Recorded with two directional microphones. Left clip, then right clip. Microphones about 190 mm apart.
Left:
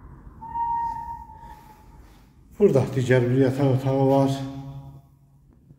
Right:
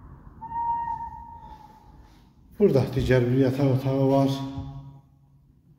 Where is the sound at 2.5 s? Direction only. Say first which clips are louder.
Left 2 dB; 30° right (ahead or behind).